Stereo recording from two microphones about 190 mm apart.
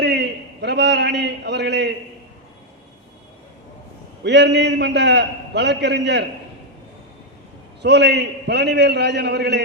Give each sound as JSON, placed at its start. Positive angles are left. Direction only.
{"t": 0.0, "sound": "a sound", "side_deg": -60}
{"t": 4.2, "sound": "a man's voice", "side_deg": -65}
{"t": 7.8, "sound": "a man's voice", "side_deg": -60}